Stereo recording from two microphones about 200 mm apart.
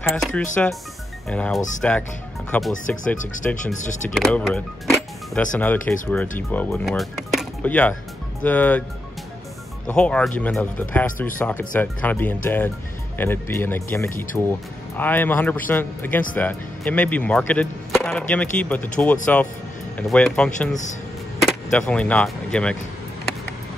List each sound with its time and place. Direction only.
0.0 s speech: centre (ahead or behind)
3.2 s speech: 40° left (ahead or behind)
4.1 s speech: 5° left (ahead or behind)
9.8 s speech: 5° left (ahead or behind)